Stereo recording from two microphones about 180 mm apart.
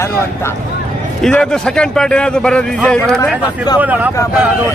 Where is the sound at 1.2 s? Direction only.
5° left (ahead or behind).